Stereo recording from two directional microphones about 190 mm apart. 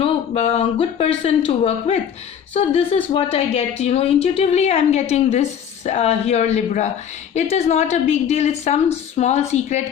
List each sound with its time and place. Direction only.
0.0 s speech: 35° left (ahead or behind)